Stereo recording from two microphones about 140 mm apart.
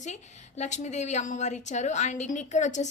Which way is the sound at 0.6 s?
55° left (ahead or behind).